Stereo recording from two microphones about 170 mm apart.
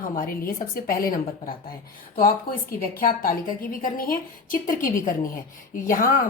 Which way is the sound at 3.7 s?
55° left (ahead or behind).